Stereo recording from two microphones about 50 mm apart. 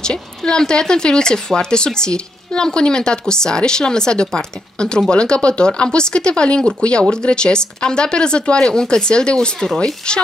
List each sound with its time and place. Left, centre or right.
0.0 s speech: centre